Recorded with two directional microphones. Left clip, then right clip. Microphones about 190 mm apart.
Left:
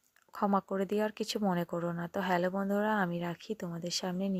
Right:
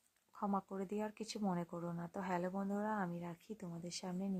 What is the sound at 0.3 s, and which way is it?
Speech, 35° left (ahead or behind).